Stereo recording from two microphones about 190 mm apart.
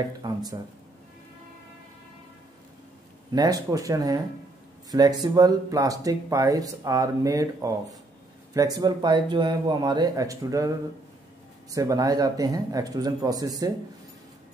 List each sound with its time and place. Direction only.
0.2 s speech: 20° right (ahead or behind)
3.3 s speech: 20° right (ahead or behind)
11.7 s speech: 15° right (ahead or behind)